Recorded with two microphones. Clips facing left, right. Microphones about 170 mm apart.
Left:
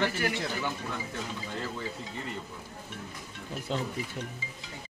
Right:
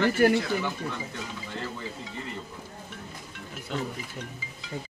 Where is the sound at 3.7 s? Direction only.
30° left (ahead or behind).